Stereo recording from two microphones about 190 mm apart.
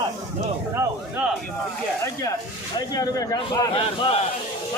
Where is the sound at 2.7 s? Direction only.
20° left (ahead or behind).